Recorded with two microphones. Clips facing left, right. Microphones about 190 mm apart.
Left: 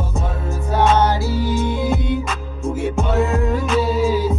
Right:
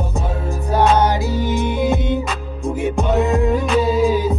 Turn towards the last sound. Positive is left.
turn(degrees=-15)  # may be behind; listen again after turning